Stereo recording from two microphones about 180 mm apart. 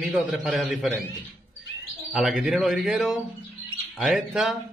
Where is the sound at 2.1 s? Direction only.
Centre (ahead or behind).